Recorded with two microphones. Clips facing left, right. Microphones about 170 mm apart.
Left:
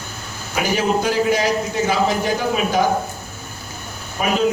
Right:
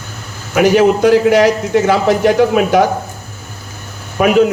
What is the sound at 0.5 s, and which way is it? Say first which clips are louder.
A man's voice: right 9 dB; 75° right (ahead or behind).